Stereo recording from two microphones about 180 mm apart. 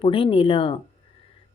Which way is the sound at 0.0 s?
30° left (ahead or behind).